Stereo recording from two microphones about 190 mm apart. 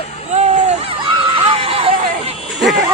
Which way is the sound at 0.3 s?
35° right (ahead or behind).